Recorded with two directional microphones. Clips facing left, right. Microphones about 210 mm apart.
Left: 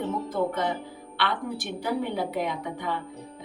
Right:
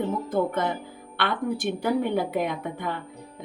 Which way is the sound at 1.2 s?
50° right (ahead or behind).